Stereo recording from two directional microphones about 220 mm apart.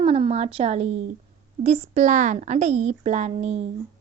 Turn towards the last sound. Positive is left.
turn(degrees=-30)  # may be behind; listen again after turning